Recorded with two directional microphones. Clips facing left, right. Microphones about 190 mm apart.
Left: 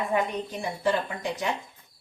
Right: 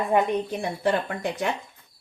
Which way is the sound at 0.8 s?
55° right (ahead or behind).